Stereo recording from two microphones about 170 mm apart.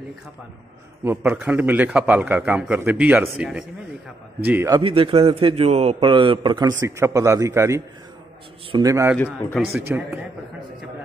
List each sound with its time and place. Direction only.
1.0 s a man's voice: 10° right (ahead or behind)
4.5 s a man's voice: 15° right (ahead or behind)
4.8 s a man's voice: 30° right (ahead or behind)
9.6 s speech: 5° right (ahead or behind)
9.8 s a man's voice: 15° right (ahead or behind)